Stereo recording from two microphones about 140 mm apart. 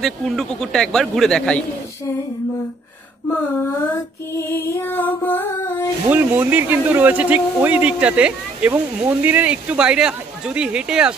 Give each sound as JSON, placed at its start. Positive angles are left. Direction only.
{"t": 0.0, "sound": "a man's voice", "side_deg": 5}
{"t": 3.3, "sound": "music", "side_deg": 20}
{"t": 6.0, "sound": "speech", "side_deg": -15}